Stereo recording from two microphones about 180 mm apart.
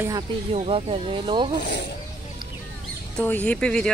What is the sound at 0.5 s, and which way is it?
Speech, 35° right (ahead or behind).